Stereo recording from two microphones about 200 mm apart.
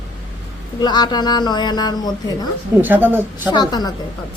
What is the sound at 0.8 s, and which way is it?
A woman's voice, 20° left (ahead or behind).